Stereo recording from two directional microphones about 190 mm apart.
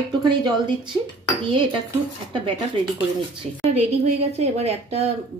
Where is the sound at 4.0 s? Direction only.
35° right (ahead or behind).